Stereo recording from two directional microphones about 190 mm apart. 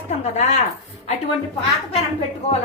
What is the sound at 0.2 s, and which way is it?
Speech, 35° left (ahead or behind).